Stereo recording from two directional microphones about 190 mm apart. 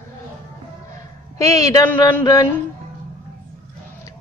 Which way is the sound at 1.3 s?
15° left (ahead or behind).